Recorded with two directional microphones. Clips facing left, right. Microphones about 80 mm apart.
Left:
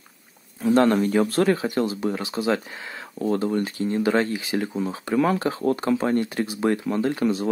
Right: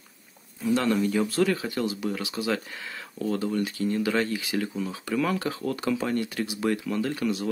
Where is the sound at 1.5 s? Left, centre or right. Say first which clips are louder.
Left 5 dB; left.